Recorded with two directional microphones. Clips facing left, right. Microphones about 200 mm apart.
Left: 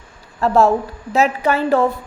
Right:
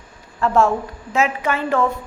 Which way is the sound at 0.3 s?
35° left (ahead or behind).